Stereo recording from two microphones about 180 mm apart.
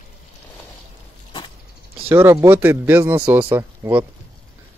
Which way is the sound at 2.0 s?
15° right (ahead or behind).